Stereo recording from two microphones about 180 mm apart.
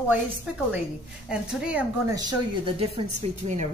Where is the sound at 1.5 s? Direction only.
5° right (ahead or behind).